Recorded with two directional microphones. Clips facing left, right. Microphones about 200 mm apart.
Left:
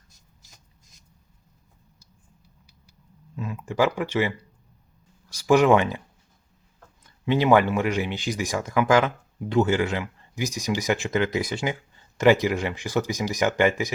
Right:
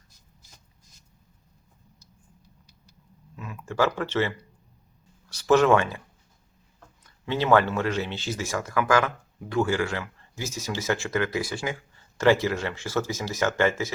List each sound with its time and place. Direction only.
3.3 s speech: 25° left (ahead or behind)
3.8 s speech: 15° left (ahead or behind)
7.3 s speech: 15° left (ahead or behind)